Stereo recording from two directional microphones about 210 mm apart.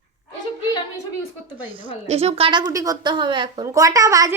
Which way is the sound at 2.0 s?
30° right (ahead or behind).